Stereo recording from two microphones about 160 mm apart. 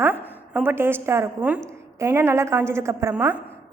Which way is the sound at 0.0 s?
15° right (ahead or behind).